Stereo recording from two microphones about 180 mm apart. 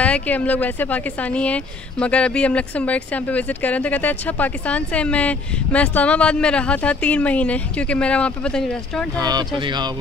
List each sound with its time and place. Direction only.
0.0 s a woman's voice: 5° left (ahead or behind)
9.2 s speech: 20° right (ahead or behind)